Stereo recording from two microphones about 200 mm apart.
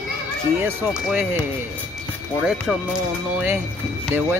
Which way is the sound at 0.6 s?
10° right (ahead or behind).